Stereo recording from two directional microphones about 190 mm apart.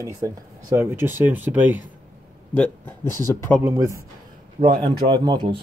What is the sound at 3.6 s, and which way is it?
Speech, 15° right (ahead or behind).